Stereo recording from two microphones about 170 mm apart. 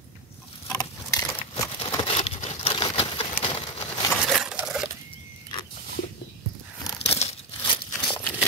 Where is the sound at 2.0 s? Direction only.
35° left (ahead or behind).